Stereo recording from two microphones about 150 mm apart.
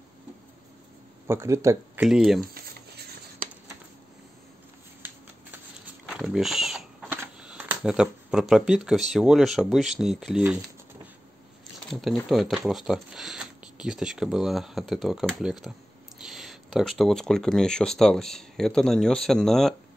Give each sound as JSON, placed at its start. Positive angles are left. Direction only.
{"t": 1.2, "sound": "speech", "side_deg": -20}
{"t": 2.0, "sound": "speech", "side_deg": -5}
{"t": 2.4, "sound": "a sound", "side_deg": -80}
{"t": 6.0, "sound": "a sound", "side_deg": -5}
{"t": 7.1, "sound": "camera", "side_deg": -10}
{"t": 9.1, "sound": "speech", "side_deg": 0}
{"t": 11.9, "sound": "speech", "side_deg": 0}